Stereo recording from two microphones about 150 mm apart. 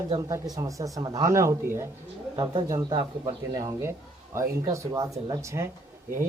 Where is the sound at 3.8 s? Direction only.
15° right (ahead or behind).